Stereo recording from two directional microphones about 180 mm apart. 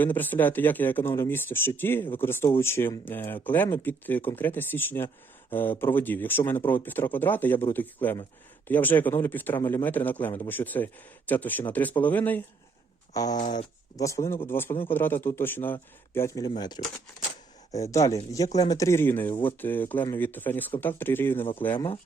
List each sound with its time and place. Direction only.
0.0 s speech: 10° left (ahead or behind)